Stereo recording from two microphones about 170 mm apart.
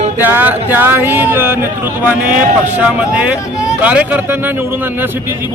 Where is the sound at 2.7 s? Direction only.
5° right (ahead or behind).